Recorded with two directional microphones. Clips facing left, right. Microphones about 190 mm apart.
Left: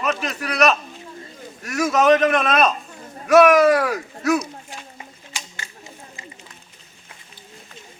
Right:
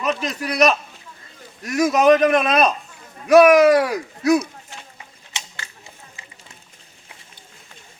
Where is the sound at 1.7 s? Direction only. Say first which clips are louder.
Right 2 dB; 15° right (ahead or behind).